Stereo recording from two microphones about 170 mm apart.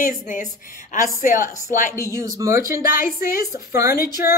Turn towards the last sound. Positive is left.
turn(degrees=60)  # may be behind; listen again after turning